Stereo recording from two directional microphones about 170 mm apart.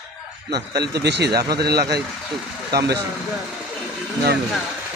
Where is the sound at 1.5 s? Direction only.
70° right (ahead or behind).